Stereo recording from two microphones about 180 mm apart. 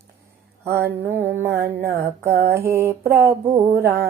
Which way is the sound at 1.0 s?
10° right (ahead or behind).